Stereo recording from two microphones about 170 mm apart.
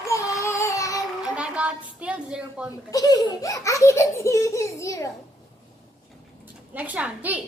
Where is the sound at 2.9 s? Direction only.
20° left (ahead or behind).